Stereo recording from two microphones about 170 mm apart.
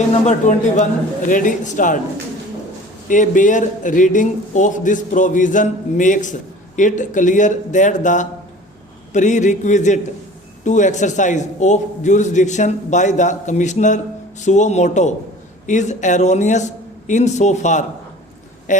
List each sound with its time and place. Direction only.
0.1 s a man's voice: 45° left (ahead or behind)
3.1 s a man's voice: 50° left (ahead or behind)